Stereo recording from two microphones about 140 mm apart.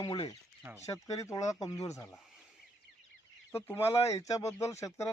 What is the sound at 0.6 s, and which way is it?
Speech, 25° right (ahead or behind).